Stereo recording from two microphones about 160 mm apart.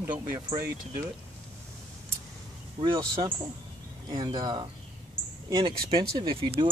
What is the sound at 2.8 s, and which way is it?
Speech, 30° right (ahead or behind).